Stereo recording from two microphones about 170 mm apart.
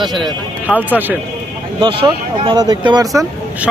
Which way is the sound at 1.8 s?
30° right (ahead or behind).